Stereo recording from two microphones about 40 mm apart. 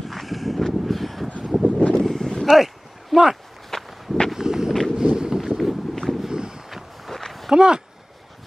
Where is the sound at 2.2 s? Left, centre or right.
Centre.